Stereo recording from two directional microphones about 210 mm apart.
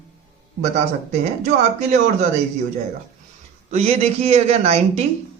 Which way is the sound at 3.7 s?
30° right (ahead or behind).